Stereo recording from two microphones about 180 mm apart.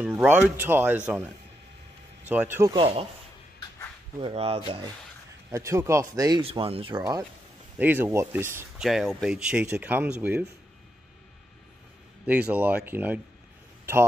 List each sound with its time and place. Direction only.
0.0 s speech: 10° right (ahead or behind)
2.2 s speech: 10° right (ahead or behind)
2.7 s speech: 30° right (ahead or behind)
4.2 s speech: 35° right (ahead or behind)
5.5 s speech: 15° right (ahead or behind)
6.4 s speech: 30° right (ahead or behind)
7.7 s speech: 10° right (ahead or behind)
8.8 s speech: centre (ahead or behind)
12.3 s speech: 10° right (ahead or behind)